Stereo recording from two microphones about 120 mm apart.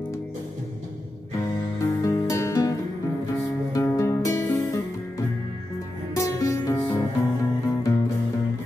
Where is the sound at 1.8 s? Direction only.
30° left (ahead or behind).